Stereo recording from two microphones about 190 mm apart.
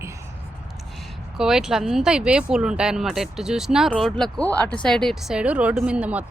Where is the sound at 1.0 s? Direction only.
Centre (ahead or behind).